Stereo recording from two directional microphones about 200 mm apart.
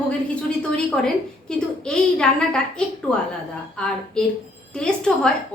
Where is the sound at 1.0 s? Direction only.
5° left (ahead or behind).